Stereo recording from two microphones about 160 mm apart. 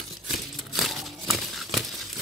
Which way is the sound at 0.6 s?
Centre (ahead or behind).